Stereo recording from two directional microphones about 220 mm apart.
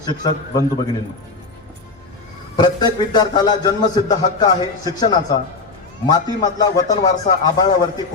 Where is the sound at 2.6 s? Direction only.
20° left (ahead or behind).